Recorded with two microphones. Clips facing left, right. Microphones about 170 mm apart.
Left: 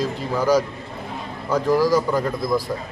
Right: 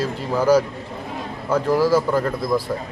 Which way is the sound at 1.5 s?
5° right (ahead or behind).